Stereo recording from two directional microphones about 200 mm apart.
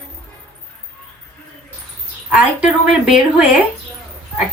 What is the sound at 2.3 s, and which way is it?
A woman's voice, 5° right (ahead or behind).